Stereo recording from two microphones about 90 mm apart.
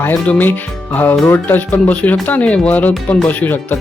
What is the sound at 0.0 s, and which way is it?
Speech, 20° left (ahead or behind).